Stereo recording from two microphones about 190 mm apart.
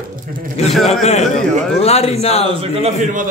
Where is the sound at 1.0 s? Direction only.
35° left (ahead or behind).